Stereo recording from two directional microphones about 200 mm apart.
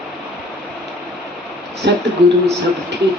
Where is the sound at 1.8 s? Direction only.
60° right (ahead or behind).